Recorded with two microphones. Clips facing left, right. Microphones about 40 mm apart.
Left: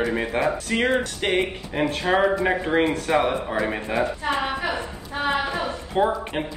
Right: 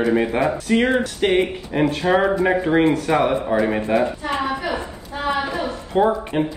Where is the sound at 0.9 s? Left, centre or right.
Right.